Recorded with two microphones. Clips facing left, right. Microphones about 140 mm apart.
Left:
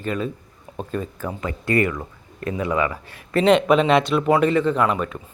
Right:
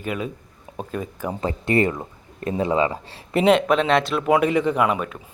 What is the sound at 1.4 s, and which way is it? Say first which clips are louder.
Speech: right 1 dB; 25° right (ahead or behind).